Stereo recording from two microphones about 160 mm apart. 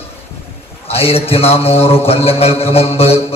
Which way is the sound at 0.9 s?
35° left (ahead or behind).